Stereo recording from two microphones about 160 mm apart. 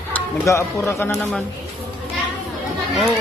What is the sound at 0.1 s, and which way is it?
Speech, 15° left (ahead or behind).